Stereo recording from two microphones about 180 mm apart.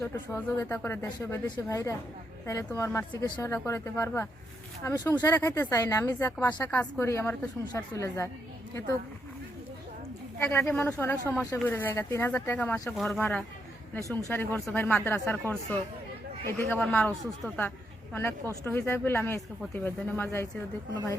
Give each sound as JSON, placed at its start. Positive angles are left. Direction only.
{"t": 0.1, "sound": "speech", "side_deg": 15}
{"t": 10.6, "sound": "speech", "side_deg": 10}
{"t": 13.9, "sound": "speech", "side_deg": 15}